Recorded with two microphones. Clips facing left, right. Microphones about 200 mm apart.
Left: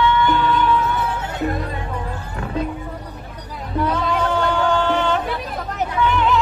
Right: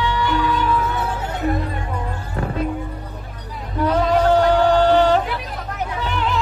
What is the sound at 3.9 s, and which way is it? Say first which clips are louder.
Music: right 8 dB; 40° right (ahead or behind).